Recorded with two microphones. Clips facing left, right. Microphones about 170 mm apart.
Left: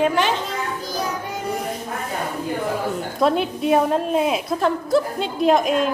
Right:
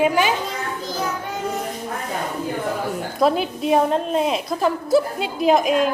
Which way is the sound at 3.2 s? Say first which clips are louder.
Right 1 dB; centre (ahead or behind).